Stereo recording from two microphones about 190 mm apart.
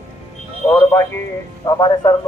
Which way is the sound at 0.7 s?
10° left (ahead or behind).